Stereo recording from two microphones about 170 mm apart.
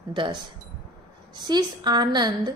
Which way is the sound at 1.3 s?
25° right (ahead or behind).